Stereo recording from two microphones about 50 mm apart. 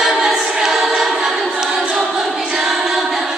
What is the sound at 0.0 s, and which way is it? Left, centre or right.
Choir, centre.